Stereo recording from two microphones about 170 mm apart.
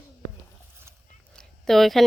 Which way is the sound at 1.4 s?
Centre (ahead or behind).